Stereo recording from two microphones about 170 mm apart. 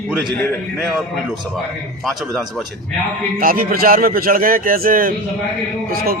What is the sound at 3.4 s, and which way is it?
Speech, 55° right (ahead or behind).